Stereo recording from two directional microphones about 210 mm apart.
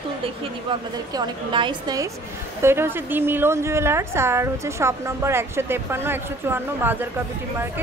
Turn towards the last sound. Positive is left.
turn(degrees=-10)  # may be behind; listen again after turning